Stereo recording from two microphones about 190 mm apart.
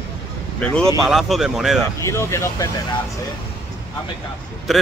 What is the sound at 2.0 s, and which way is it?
Speech, 15° left (ahead or behind).